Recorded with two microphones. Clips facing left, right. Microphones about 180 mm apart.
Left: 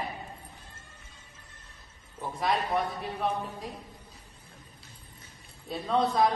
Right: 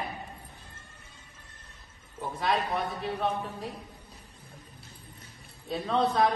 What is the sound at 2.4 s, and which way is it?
A man's voice, centre (ahead or behind).